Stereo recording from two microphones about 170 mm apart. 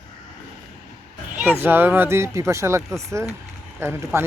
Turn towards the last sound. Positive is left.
turn(degrees=-15)  # may be behind; listen again after turning